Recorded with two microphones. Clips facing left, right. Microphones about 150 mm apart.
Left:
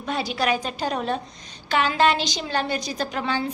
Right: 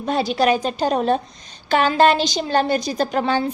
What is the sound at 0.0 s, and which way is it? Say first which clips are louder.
A woman's voice: right 6 dB; 30° right (ahead or behind).